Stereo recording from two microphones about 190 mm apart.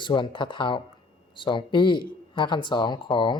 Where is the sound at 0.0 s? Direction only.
25° left (ahead or behind).